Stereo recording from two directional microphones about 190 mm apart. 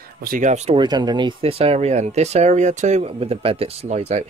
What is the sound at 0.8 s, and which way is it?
Speech, 20° right (ahead or behind).